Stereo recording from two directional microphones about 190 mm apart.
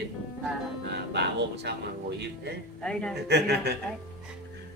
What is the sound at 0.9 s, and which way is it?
Speech, 65° right (ahead or behind).